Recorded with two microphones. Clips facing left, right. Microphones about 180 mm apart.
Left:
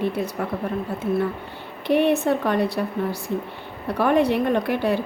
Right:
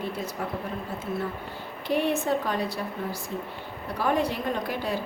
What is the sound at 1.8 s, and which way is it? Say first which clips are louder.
A woman's voice: left 6 dB; 65° left (ahead or behind).